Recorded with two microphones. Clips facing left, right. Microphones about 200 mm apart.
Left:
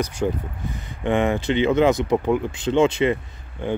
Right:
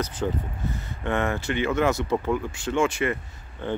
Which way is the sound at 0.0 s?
10° left (ahead or behind).